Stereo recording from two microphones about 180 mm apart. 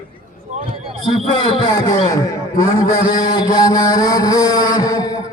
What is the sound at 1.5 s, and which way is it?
Music, 30° left (ahead or behind).